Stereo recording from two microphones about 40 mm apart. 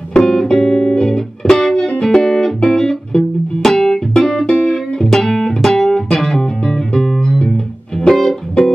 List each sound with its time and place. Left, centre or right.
0.2 s music: centre